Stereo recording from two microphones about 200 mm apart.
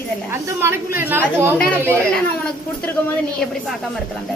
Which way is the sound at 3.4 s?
Centre (ahead or behind).